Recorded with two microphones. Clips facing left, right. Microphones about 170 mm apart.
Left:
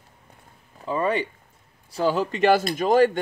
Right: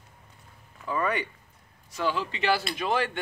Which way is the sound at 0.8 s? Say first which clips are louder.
Left 5 dB; 30° left (ahead or behind).